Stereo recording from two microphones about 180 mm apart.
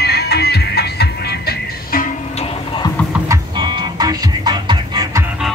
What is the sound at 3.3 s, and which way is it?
Music, 25° right (ahead or behind).